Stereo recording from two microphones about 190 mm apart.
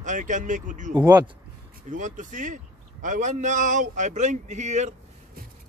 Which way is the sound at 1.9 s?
40° right (ahead or behind).